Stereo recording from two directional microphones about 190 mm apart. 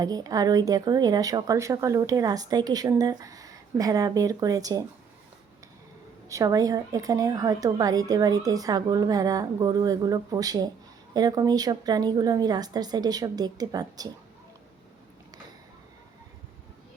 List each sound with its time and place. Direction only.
0.0 s a woman's voice: 20° right (ahead or behind)
6.2 s a woman's voice: 15° right (ahead or behind)